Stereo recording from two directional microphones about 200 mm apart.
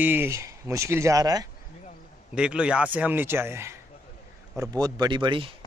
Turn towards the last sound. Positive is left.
turn(degrees=-25)  # may be behind; listen again after turning